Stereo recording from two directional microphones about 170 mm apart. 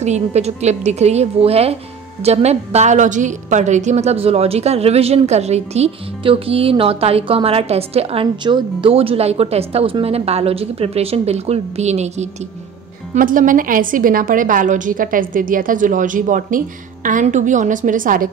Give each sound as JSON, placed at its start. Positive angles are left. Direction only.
{"t": 0.0, "sound": "a woman's voice", "side_deg": -40}
{"t": 13.1, "sound": "a woman's voice", "side_deg": -50}